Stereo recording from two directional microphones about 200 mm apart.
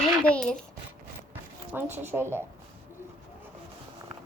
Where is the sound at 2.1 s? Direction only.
10° right (ahead or behind).